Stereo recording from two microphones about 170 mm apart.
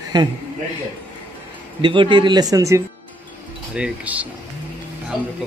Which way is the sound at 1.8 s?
30° right (ahead or behind).